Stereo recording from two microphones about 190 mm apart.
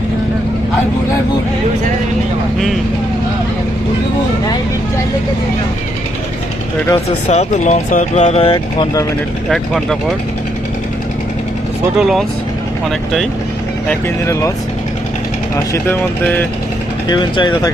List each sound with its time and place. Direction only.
6.8 s speech: 25° left (ahead or behind)
7.3 s speech: 40° left (ahead or behind); by 9.0 s 25° left (ahead or behind)
9.5 s speech: centre (ahead or behind)
11.9 s speech: centre (ahead or behind)
15.5 s speech: 15° left (ahead or behind)
17.1 s speech: 25° left (ahead or behind)